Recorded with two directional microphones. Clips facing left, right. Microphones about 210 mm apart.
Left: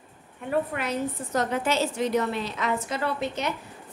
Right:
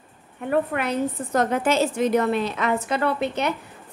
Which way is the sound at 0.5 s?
60° right (ahead or behind).